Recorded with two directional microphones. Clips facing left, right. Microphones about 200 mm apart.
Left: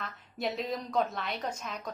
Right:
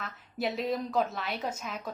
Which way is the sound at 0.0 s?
Centre (ahead or behind).